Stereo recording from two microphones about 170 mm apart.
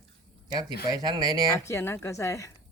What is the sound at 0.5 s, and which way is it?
Speech, 25° right (ahead or behind).